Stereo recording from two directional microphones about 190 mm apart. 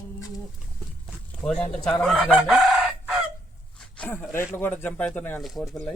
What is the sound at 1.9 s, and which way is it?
Chicken, 5° left (ahead or behind).